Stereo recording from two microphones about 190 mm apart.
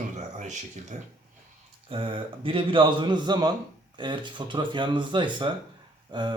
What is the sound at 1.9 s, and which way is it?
Speech, 30° right (ahead or behind).